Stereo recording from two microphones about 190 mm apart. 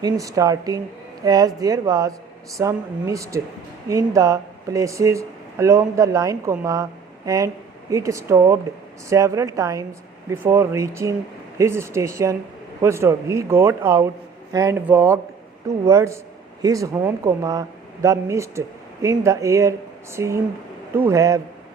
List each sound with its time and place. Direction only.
0.0 s speech: 15° right (ahead or behind)